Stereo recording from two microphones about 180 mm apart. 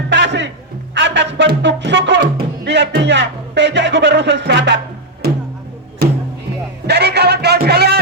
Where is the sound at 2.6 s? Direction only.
75° right (ahead or behind).